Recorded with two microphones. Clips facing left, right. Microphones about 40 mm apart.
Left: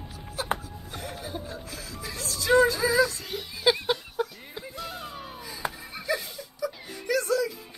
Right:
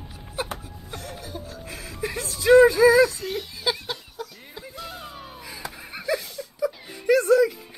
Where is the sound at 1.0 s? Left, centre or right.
Centre.